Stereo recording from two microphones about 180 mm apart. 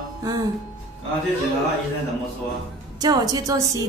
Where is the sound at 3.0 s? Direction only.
20° right (ahead or behind).